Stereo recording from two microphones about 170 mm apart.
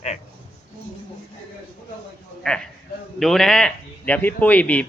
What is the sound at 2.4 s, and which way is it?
A man's voice, 5° left (ahead or behind).